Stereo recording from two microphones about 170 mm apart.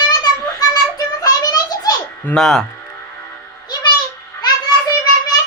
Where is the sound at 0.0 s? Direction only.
25° left (ahead or behind).